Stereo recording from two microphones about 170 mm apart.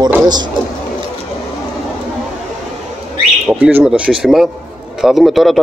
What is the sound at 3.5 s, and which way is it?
A man's voice, 5° right (ahead or behind).